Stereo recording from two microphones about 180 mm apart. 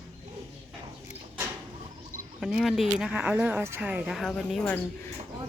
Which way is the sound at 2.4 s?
Centre (ahead or behind).